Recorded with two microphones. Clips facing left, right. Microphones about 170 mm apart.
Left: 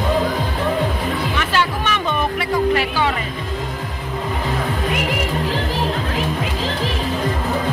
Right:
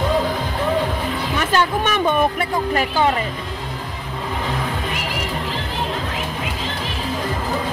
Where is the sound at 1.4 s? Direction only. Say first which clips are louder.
Right 6 dB; 45° right (ahead or behind).